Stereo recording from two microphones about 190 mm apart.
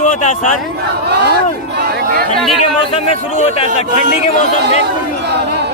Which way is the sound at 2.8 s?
30° left (ahead or behind).